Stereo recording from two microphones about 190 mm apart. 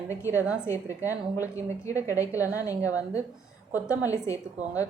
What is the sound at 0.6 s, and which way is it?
A woman's voice, 15° left (ahead or behind).